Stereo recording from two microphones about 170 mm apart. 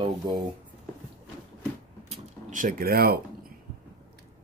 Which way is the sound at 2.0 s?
45° right (ahead or behind).